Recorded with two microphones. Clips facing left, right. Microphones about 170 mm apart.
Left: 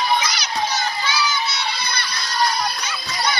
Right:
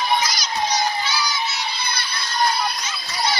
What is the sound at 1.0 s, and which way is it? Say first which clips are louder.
Child singing: left 2 dB; 65° left (ahead or behind).